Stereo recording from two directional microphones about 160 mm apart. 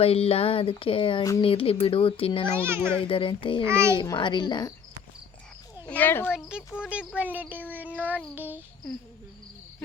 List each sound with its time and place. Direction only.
0.0 s a sound: 40° left (ahead or behind)
2.6 s child singing: 15° right (ahead or behind)
3.0 s a sound: 35° left (ahead or behind)
3.7 s child singing: 15° right (ahead or behind)
3.9 s a woman's voice: 25° left (ahead or behind)
5.9 s speech: 10° left (ahead or behind)
7.2 s child singing: 10° right (ahead or behind)